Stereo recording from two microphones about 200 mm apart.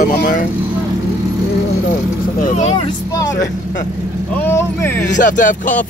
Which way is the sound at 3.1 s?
15° left (ahead or behind).